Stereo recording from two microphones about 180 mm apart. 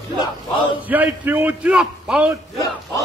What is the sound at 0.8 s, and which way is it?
A man's voice, 10° right (ahead or behind).